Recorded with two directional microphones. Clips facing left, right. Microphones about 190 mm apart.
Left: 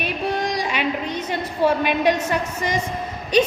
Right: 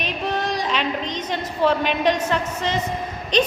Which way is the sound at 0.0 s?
10° left (ahead or behind).